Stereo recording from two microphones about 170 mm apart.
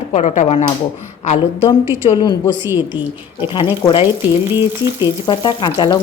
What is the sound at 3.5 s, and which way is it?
Sizzle, 30° left (ahead or behind).